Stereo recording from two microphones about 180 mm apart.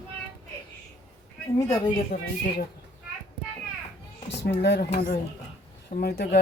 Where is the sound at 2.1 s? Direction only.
55° left (ahead or behind).